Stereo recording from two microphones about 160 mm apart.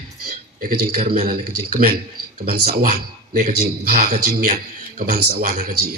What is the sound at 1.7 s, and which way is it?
Speech, 70° right (ahead or behind).